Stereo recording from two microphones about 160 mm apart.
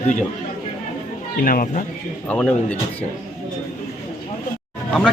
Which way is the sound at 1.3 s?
60° left (ahead or behind).